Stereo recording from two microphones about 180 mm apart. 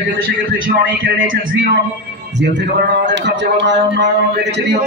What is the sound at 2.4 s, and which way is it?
A man's voice, 75° right (ahead or behind).